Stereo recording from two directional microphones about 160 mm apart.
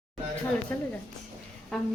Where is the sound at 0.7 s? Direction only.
15° left (ahead or behind).